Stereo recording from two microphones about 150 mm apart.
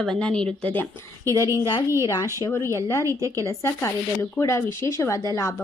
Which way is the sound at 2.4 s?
20° left (ahead or behind).